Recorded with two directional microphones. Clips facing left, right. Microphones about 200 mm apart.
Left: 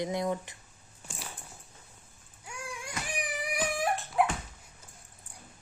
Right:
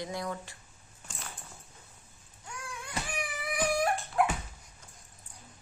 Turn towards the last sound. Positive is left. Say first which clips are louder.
# even
turn(degrees=0)  # may be behind; listen again after turning